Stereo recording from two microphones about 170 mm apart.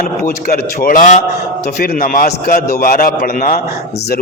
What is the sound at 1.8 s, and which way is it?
A man's voice, 60° left (ahead or behind).